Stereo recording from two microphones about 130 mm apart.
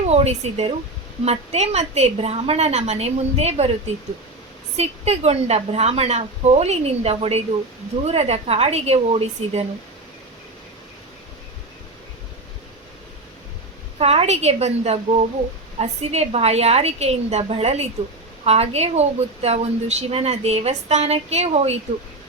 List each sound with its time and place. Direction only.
0.0 s a woman's voice: 55° right (ahead or behind)
4.8 s a woman's voice: 55° right (ahead or behind)
14.0 s a woman's voice: 50° right (ahead or behind)